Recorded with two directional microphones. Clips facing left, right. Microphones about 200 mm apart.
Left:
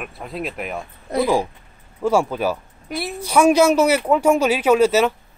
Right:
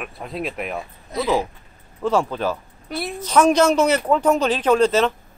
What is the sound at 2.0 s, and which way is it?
Speech, 10° left (ahead or behind).